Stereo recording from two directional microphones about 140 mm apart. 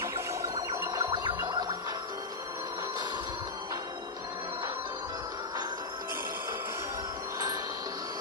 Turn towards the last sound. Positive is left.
turn(degrees=-25)  # may be behind; listen again after turning